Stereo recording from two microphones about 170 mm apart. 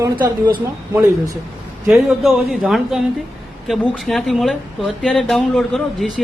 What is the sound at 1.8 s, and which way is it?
Speech, centre (ahead or behind).